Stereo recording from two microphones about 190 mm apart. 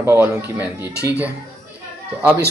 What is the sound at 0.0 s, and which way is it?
Speech, 10° right (ahead or behind).